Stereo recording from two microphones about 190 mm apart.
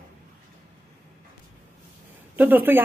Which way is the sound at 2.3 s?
10° right (ahead or behind).